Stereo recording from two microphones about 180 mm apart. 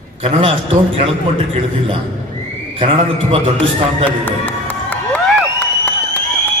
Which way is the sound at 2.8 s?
30° right (ahead or behind).